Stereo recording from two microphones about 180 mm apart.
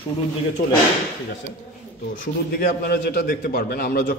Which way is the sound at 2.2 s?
55° left (ahead or behind).